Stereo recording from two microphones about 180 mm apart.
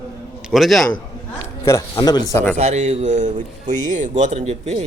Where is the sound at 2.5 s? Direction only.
40° right (ahead or behind).